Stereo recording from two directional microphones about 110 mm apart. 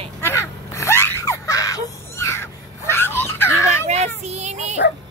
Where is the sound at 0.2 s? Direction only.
25° left (ahead or behind).